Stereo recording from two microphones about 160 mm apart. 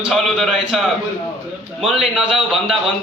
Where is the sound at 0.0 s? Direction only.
Centre (ahead or behind).